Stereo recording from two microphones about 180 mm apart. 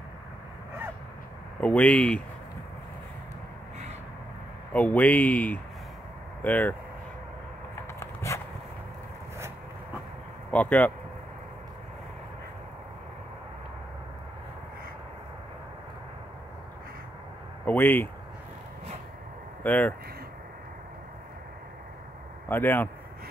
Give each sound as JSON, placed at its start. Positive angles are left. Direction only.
{"t": 1.6, "sound": "speech", "side_deg": 5}
{"t": 4.7, "sound": "speech", "side_deg": 10}
{"t": 8.0, "sound": "a sound", "side_deg": 15}
{"t": 10.5, "sound": "speech", "side_deg": 10}
{"t": 17.6, "sound": "speech", "side_deg": 10}
{"t": 19.6, "sound": "speech", "side_deg": 10}
{"t": 22.5, "sound": "speech", "side_deg": 10}